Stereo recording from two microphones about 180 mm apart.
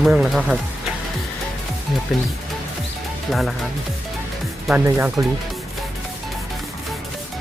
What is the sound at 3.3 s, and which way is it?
Speech, centre (ahead or behind).